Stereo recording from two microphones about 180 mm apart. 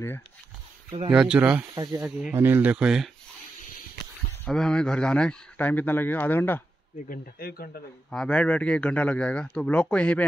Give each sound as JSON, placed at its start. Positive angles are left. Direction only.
{"t": 1.1, "sound": "speech", "side_deg": -5}
{"t": 1.8, "sound": "speech", "side_deg": -20}
{"t": 2.3, "sound": "speech", "side_deg": -10}
{"t": 4.5, "sound": "speech", "side_deg": 5}
{"t": 7.1, "sound": "speech", "side_deg": 55}
{"t": 8.1, "sound": "a man's voice", "side_deg": 5}